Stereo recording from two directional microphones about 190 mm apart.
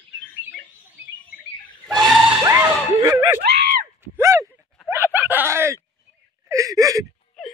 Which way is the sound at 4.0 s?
15° right (ahead or behind).